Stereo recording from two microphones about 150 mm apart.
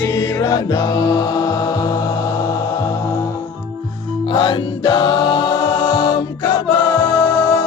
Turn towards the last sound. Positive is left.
turn(degrees=20)  # may be behind; listen again after turning